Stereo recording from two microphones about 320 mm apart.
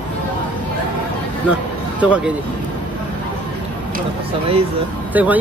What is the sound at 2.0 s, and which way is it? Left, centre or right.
Speech, centre.